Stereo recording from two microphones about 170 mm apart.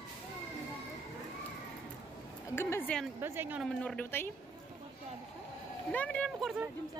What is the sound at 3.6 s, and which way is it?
Speech, 5° left (ahead or behind).